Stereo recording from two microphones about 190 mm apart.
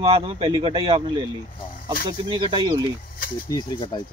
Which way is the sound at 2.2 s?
30° right (ahead or behind).